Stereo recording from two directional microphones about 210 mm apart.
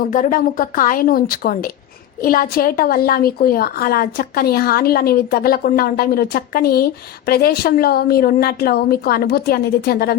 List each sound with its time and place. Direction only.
0.1 s a woman's voice: 40° left (ahead or behind)